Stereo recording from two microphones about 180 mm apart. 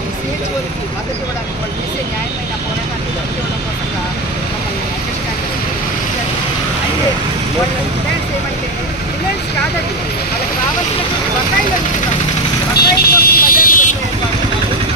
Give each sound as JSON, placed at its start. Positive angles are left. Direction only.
{"t": 12.7, "sound": "vehicle", "side_deg": 55}